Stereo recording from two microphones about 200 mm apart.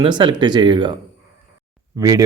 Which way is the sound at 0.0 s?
25° right (ahead or behind).